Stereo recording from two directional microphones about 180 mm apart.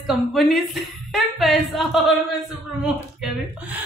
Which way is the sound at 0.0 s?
Centre (ahead or behind).